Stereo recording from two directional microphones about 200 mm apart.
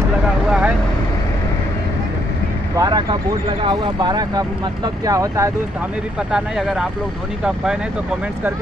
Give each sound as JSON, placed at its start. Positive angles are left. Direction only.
{"t": 0.5, "sound": "vehicle", "side_deg": -5}
{"t": 2.7, "sound": "speech", "side_deg": -20}
{"t": 6.3, "sound": "speech", "side_deg": 0}